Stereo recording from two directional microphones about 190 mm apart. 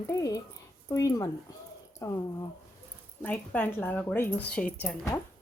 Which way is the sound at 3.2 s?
10° left (ahead or behind).